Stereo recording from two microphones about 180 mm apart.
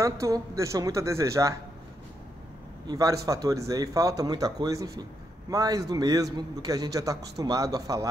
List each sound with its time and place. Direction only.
0.0 s a woman's voice: 15° right (ahead or behind)
2.9 s a man's voice: 20° right (ahead or behind)